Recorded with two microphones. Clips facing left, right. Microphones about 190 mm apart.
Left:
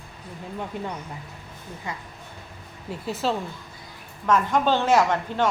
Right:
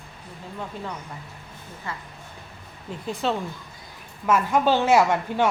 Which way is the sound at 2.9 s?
5° left (ahead or behind).